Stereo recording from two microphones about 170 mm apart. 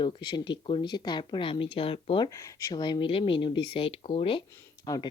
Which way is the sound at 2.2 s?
20° left (ahead or behind).